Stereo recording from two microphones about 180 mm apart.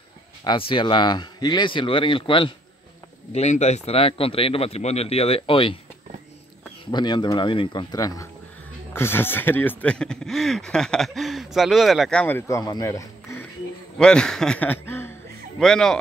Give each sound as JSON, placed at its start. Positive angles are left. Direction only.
{"t": 0.4, "sound": "speech", "side_deg": 25}
{"t": 6.9, "sound": "speech", "side_deg": 25}
{"t": 13.9, "sound": "a man's voice", "side_deg": 5}